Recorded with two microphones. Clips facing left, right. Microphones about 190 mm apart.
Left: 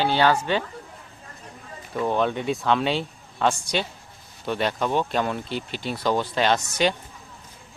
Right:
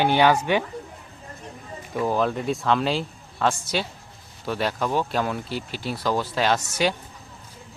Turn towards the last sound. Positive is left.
turn(degrees=-10)  # may be behind; listen again after turning